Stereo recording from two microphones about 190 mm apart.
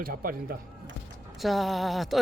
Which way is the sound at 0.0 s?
50° right (ahead or behind).